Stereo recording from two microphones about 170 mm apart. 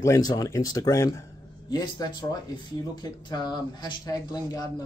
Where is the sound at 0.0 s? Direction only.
20° left (ahead or behind).